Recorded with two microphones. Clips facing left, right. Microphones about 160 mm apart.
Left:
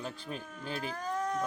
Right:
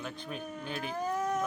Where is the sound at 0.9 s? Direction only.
15° right (ahead or behind).